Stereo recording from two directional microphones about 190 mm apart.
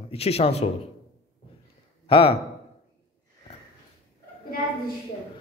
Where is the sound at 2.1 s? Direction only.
30° left (ahead or behind).